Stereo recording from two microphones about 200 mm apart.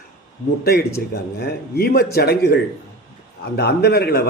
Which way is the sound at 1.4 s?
50° left (ahead or behind).